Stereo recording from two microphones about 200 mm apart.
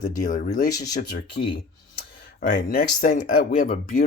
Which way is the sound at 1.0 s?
50° left (ahead or behind).